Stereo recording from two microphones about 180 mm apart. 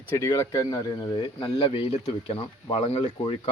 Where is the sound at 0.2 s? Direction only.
15° left (ahead or behind).